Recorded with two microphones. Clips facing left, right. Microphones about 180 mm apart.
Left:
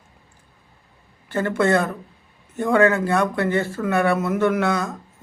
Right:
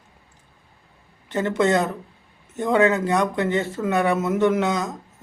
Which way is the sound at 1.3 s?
20° right (ahead or behind).